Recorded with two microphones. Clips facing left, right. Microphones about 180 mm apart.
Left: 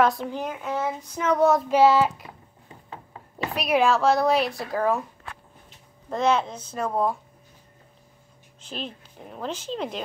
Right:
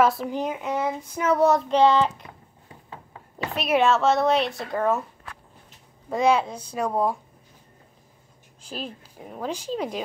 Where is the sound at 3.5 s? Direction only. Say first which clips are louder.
Right 1 dB; centre (ahead or behind).